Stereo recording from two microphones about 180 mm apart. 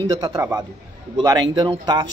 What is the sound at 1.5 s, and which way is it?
Speech, 25° right (ahead or behind).